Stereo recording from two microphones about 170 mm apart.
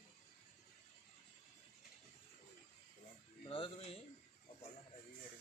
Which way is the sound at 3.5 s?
30° left (ahead or behind).